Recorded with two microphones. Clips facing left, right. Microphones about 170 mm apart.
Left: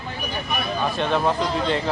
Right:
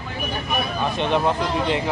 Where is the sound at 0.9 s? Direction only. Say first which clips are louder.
Right 2 dB; 20° right (ahead or behind).